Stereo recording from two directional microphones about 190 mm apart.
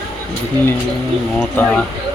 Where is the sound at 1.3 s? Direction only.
5° left (ahead or behind).